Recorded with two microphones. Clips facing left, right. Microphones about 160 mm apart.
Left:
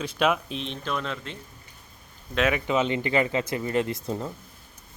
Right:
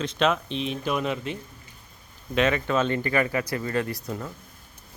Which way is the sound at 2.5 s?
15° left (ahead or behind).